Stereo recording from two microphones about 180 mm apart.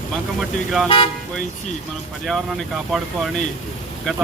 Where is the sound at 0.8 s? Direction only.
30° left (ahead or behind).